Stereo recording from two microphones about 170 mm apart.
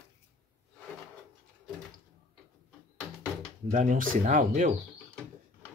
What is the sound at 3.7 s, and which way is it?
Speech, 50° right (ahead or behind).